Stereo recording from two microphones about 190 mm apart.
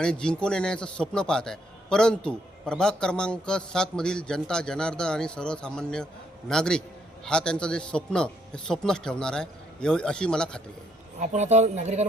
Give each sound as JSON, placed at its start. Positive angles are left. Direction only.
{"t": 0.0, "sound": "a man's voice", "side_deg": 5}
{"t": 11.2, "sound": "speech", "side_deg": -35}